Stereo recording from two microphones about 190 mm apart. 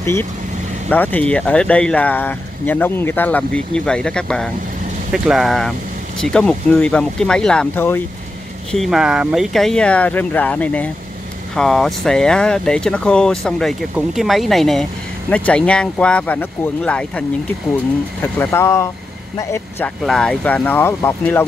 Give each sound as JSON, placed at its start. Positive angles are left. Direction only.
{"t": 0.0, "sound": "speech", "side_deg": 15}
{"t": 8.7, "sound": "speech", "side_deg": 0}
{"t": 18.2, "sound": "speech", "side_deg": 10}
{"t": 20.1, "sound": "speech", "side_deg": 5}